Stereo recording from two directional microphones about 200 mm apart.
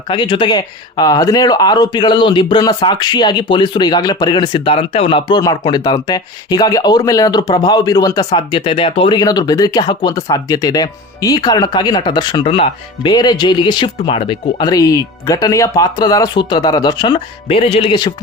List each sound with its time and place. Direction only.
0.1 s speech: 25° left (ahead or behind)